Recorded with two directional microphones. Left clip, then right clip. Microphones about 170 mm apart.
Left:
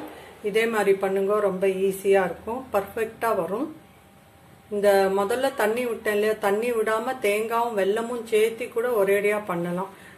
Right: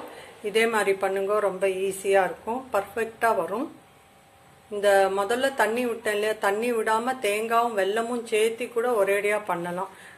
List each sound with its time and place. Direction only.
0.4 s a woman's voice: 25° right (ahead or behind)
4.7 s speech: 20° right (ahead or behind)